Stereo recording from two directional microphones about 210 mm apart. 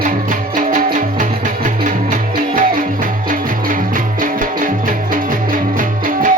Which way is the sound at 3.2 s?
40° right (ahead or behind).